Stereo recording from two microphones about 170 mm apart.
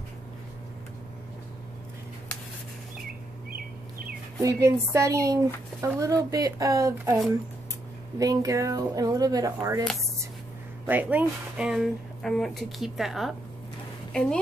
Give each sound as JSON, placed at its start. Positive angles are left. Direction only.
{"t": 4.4, "sound": "speech", "side_deg": -15}
{"t": 8.2, "sound": "speech", "side_deg": -20}
{"t": 10.9, "sound": "speech", "side_deg": -10}